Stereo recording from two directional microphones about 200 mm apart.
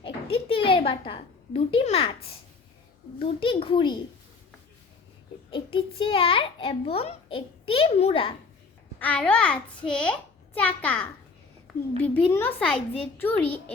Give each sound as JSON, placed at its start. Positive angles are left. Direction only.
{"t": 0.0, "sound": "a child's voice", "side_deg": 25}
{"t": 5.5, "sound": "a child's voice", "side_deg": 25}
{"t": 9.0, "sound": "a child's voice", "side_deg": 5}